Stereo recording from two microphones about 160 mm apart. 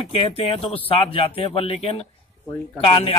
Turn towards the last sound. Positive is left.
turn(degrees=40)  # may be behind; listen again after turning